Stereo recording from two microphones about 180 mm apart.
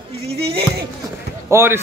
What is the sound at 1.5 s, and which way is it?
Speech, 15° right (ahead or behind).